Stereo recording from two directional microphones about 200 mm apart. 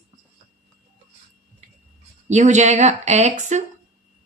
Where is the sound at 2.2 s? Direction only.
35° right (ahead or behind).